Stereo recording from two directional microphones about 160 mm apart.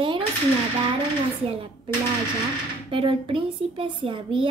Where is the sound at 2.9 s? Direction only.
35° right (ahead or behind).